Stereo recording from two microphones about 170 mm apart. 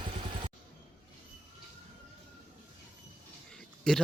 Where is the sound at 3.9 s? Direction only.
5° left (ahead or behind).